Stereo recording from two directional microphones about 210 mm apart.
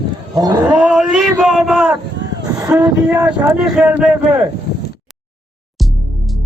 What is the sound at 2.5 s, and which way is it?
Vehicle, 15° right (ahead or behind).